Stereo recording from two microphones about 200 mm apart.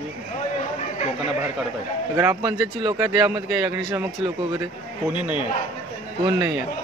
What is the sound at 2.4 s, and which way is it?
Speech, 20° right (ahead or behind).